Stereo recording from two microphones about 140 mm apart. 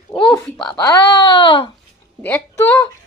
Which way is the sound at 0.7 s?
30° left (ahead or behind).